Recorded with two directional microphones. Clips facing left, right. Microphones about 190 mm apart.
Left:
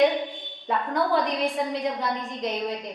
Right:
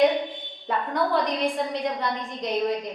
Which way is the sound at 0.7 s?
Centre (ahead or behind).